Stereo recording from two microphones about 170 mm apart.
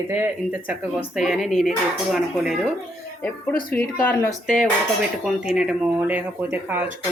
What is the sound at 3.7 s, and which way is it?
Speech, 10° left (ahead or behind).